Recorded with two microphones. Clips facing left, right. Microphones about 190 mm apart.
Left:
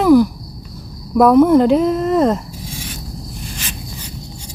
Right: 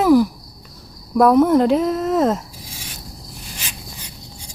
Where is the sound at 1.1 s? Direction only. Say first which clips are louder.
Left 3 dB; centre (ahead or behind).